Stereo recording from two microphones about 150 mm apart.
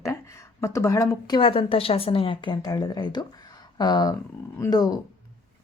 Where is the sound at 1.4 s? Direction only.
35° left (ahead or behind).